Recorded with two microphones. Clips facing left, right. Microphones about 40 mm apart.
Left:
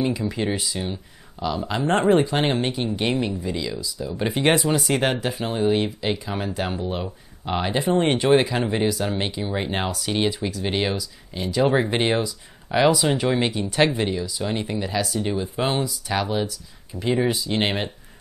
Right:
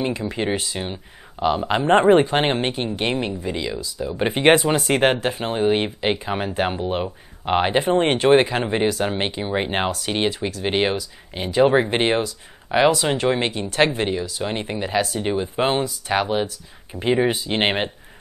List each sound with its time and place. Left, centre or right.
0.0 s speech: centre